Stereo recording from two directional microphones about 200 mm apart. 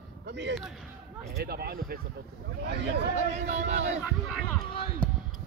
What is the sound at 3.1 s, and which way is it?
Speech, 35° right (ahead or behind).